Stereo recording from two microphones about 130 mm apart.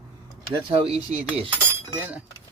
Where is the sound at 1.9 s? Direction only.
15° right (ahead or behind).